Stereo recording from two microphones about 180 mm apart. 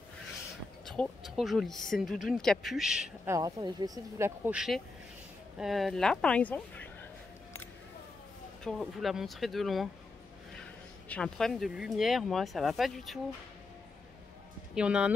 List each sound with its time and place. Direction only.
0.8 s speech: centre (ahead or behind)
3.3 s speech: 20° right (ahead or behind)
4.5 s speech: centre (ahead or behind)
8.6 s speech: centre (ahead or behind)
11.1 s speech: 5° left (ahead or behind)
14.8 s speech: 5° right (ahead or behind)